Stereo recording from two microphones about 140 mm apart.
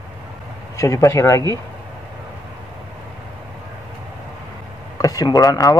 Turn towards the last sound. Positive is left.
turn(degrees=25)  # may be behind; listen again after turning